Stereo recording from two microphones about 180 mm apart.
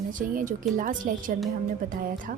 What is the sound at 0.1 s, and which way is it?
A woman's voice, 45° right (ahead or behind).